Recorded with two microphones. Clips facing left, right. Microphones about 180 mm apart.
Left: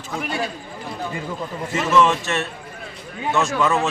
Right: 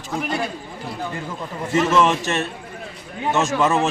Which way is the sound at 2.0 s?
20° right (ahead or behind).